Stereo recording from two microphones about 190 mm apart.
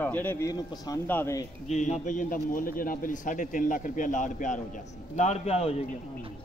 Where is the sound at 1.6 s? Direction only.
35° left (ahead or behind).